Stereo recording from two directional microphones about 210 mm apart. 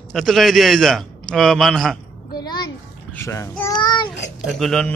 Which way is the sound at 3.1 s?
10° left (ahead or behind).